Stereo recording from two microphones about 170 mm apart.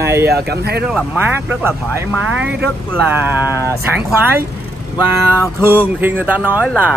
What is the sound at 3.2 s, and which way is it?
Speech, 10° right (ahead or behind).